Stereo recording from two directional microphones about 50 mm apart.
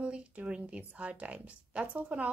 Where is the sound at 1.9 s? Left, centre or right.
Right.